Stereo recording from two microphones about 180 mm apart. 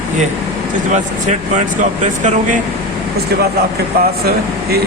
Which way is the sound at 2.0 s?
45° right (ahead or behind).